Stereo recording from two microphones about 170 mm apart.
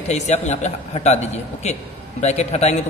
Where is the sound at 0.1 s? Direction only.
40° left (ahead or behind).